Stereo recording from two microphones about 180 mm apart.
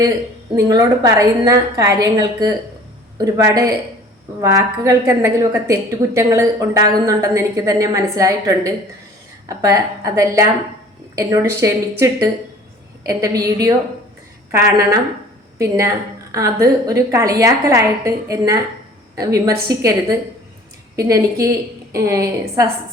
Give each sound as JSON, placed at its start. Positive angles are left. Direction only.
{"t": 0.5, "sound": "a woman's voice", "side_deg": -20}